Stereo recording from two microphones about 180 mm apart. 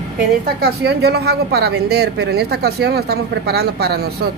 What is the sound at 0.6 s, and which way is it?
Speech, 65° right (ahead or behind).